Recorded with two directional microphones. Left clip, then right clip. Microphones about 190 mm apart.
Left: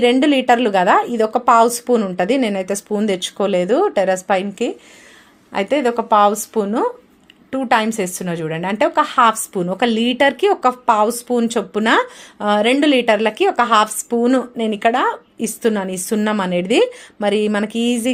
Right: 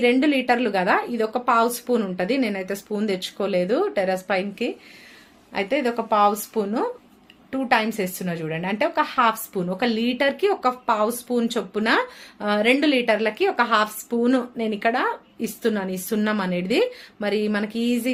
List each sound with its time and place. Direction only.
0.0 s speech: 35° left (ahead or behind)